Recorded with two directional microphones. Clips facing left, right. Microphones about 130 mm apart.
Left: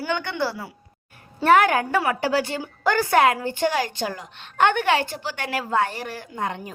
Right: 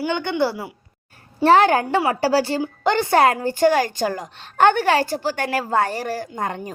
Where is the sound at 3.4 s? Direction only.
40° right (ahead or behind).